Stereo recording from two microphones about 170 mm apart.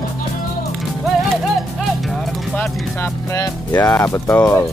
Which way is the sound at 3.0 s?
20° left (ahead or behind).